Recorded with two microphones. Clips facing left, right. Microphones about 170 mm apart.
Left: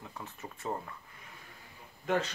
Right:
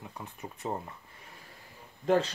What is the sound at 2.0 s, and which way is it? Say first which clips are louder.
Speech: right 5 dB; 35° right (ahead or behind).